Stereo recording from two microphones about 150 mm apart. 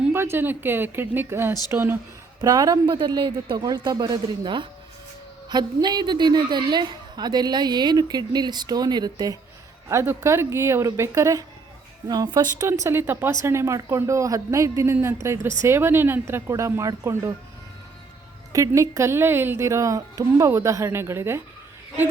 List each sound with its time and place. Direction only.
0.0 s a woman's voice: 15° right (ahead or behind)
18.5 s speech: 20° right (ahead or behind)